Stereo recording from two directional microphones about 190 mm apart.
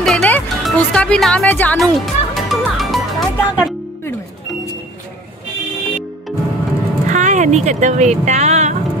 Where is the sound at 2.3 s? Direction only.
Centre (ahead or behind).